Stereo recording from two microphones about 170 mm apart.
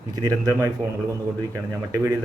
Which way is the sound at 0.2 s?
20° right (ahead or behind).